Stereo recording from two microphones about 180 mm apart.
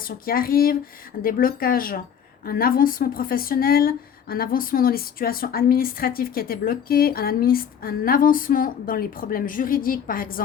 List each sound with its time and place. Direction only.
0.3 s a woman's voice: 55° left (ahead or behind)